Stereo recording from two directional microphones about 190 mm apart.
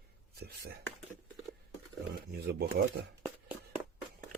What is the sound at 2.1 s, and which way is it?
Speech, 60° right (ahead or behind).